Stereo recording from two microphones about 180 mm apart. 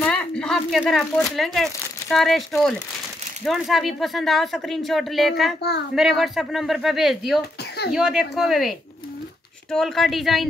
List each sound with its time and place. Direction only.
0.0 s speech: 5° left (ahead or behind)
5.6 s speech: 65° left (ahead or behind)
5.9 s speech: centre (ahead or behind)